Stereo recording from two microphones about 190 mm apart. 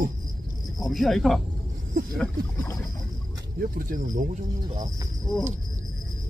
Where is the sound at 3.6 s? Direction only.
50° right (ahead or behind).